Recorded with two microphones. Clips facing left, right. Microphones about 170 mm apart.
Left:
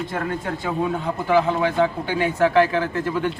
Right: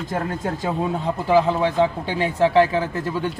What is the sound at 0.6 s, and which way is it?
A man's voice, 25° right (ahead or behind).